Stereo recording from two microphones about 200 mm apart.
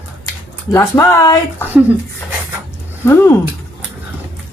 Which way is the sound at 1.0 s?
15° left (ahead or behind).